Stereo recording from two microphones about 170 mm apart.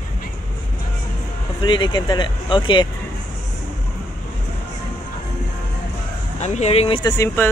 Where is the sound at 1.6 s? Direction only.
30° left (ahead or behind).